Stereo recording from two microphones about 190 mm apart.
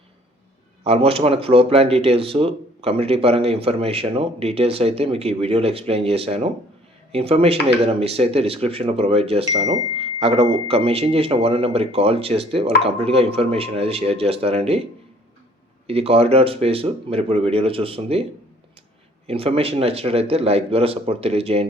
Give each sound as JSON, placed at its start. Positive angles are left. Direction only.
{"t": 0.9, "sound": "speech", "side_deg": -30}
{"t": 15.9, "sound": "speech", "side_deg": -30}
{"t": 19.3, "sound": "speech", "side_deg": -30}